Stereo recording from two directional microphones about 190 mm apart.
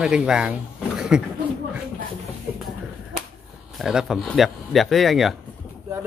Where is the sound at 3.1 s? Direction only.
50° right (ahead or behind).